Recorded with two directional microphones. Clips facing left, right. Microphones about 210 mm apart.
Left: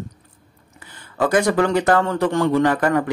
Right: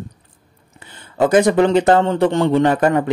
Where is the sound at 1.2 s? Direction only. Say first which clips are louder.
Right 4 dB; 20° right (ahead or behind).